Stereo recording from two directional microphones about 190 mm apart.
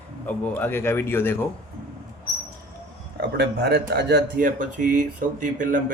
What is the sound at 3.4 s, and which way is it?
Speech, 60° right (ahead or behind).